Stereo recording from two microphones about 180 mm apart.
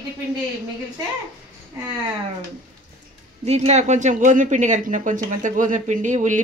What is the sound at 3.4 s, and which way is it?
Speech, 35° right (ahead or behind).